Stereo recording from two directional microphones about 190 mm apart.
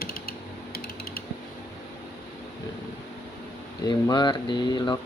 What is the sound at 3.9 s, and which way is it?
Speech, 20° left (ahead or behind).